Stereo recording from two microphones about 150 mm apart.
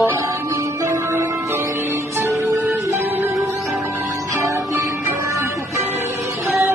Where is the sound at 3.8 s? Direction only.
20° right (ahead or behind).